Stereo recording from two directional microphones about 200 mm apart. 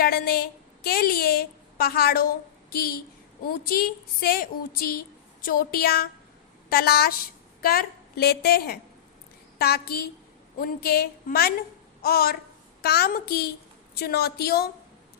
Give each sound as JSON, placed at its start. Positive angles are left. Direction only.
{"t": 0.0, "sound": "a woman's voice", "side_deg": 50}